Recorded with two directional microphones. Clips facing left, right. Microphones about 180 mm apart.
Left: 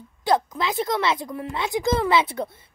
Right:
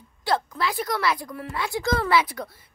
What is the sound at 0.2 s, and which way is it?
A woman's voice, 20° left (ahead or behind).